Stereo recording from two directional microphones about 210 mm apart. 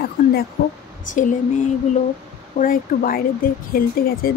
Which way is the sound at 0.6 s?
45° left (ahead or behind).